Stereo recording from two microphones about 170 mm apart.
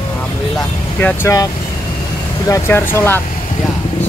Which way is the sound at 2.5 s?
15° left (ahead or behind).